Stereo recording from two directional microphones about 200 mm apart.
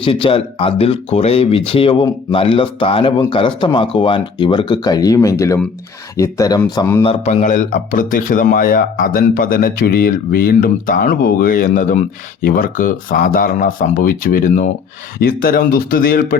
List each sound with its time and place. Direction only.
0.0 s speech: 25° left (ahead or behind)
7.0 s speech: 30° left (ahead or behind); by 16.4 s 50° left (ahead or behind)